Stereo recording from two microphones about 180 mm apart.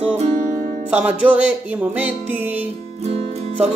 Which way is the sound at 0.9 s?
5° right (ahead or behind).